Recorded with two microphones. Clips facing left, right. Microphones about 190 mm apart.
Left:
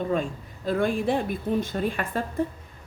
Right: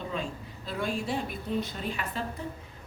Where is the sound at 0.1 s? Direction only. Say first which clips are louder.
Left 8 dB; 50° left (ahead or behind).